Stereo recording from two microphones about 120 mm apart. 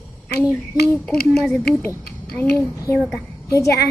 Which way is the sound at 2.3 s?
10° left (ahead or behind).